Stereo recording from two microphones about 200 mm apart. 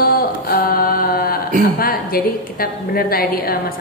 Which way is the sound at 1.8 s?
45° left (ahead or behind).